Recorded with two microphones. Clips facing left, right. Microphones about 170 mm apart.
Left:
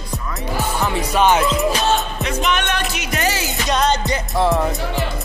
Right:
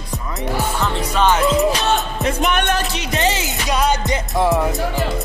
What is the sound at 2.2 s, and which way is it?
Music, 45° right (ahead or behind).